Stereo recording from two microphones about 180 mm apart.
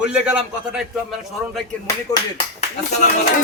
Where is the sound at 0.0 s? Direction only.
5° right (ahead or behind).